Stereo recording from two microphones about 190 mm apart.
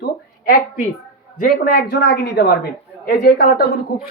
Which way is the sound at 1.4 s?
55° left (ahead or behind).